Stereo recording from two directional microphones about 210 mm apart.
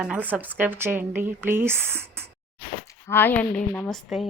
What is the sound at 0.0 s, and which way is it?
A woman's voice, 5° right (ahead or behind).